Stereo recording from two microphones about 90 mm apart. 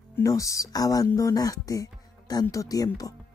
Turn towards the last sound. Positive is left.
turn(degrees=40)  # may be behind; listen again after turning